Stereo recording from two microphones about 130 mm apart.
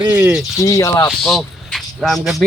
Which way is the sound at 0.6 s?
25° left (ahead or behind).